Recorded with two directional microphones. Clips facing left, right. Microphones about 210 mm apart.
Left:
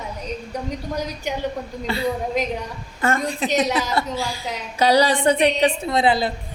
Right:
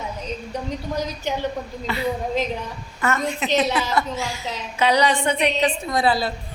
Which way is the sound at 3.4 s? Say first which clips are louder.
Even; 30° left (ahead or behind).